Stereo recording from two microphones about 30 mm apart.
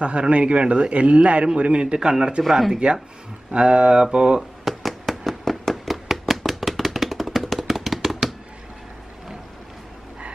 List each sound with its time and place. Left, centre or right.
0.0 s a man's voice: right
1.6 s mantra: right
2.0 s a man's voice: right
2.7 s mantra: right
4.4 s a sound: centre
7.1 s tap: centre